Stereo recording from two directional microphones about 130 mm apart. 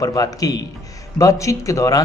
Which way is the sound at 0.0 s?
30° left (ahead or behind).